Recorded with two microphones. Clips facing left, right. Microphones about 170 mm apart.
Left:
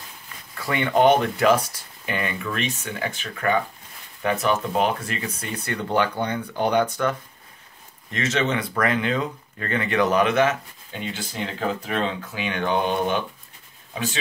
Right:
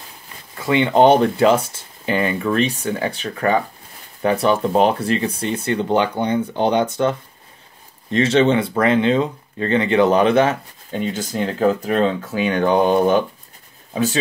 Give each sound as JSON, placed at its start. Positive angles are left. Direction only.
{"t": 0.6, "sound": "speech", "side_deg": -25}